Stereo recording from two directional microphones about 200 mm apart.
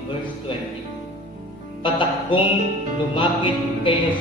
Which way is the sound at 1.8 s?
25° left (ahead or behind).